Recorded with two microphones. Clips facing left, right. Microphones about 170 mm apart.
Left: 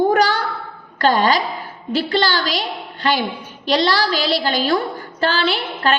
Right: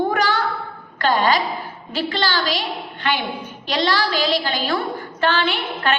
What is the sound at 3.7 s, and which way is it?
A woman's voice, 40° left (ahead or behind).